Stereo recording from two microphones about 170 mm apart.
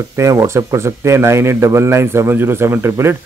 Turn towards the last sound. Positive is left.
turn(degrees=-15)  # may be behind; listen again after turning